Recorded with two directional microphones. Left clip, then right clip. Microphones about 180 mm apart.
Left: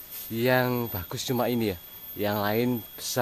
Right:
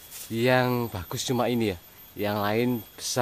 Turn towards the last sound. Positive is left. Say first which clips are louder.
# right 1 dB
turn(degrees=-10)  # may be behind; listen again after turning